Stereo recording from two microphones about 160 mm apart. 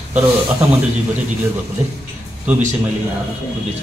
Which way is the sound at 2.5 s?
10° right (ahead or behind).